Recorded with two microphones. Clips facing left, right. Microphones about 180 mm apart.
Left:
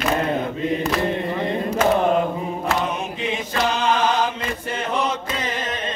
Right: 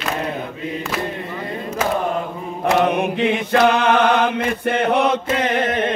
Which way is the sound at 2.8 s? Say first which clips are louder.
Right 8 dB; 65° right (ahead or behind).